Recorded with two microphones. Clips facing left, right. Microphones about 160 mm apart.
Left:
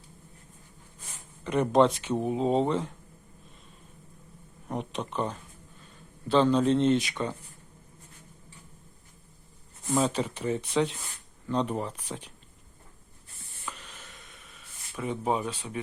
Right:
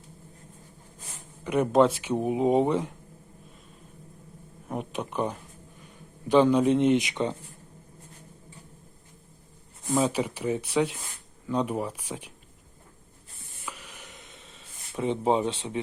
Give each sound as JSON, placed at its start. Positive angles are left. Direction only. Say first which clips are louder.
{"t": 1.5, "sound": "speech", "louder": "right 1 dB", "side_deg": -5}
{"t": 4.7, "sound": "speech", "louder": "right 1 dB", "side_deg": -5}
{"t": 9.8, "sound": "speech", "louder": "right 1 dB", "side_deg": -10}
{"t": 13.7, "sound": "a sound", "louder": "right 1 dB", "side_deg": -10}